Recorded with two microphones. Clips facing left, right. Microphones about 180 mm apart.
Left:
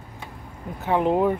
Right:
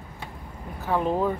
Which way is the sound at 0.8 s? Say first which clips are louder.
Left 4 dB; 20° left (ahead or behind).